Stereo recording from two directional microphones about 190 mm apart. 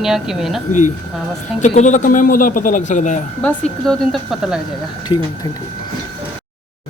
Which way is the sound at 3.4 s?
5° left (ahead or behind).